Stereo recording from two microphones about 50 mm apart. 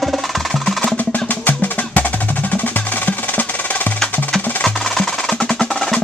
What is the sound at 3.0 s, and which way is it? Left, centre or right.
Music, left.